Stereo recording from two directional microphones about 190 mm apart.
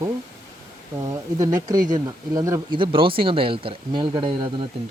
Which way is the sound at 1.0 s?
15° right (ahead or behind).